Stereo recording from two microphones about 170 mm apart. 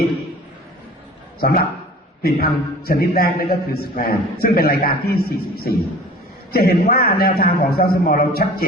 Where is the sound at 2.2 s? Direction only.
60° left (ahead or behind).